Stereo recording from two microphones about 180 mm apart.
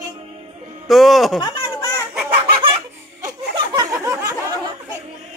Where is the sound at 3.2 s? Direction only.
20° right (ahead or behind).